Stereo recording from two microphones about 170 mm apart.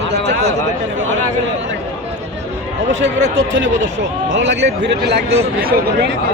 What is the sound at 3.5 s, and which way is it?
Speech, 90° right.